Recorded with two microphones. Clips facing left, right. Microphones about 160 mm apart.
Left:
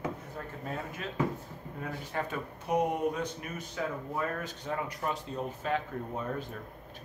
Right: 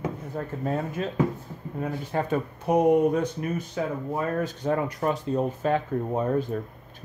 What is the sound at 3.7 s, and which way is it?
Speech, 30° right (ahead or behind).